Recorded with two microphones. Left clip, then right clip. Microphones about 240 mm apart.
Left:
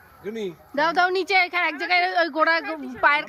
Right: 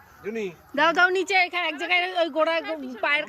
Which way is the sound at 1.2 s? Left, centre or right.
Centre.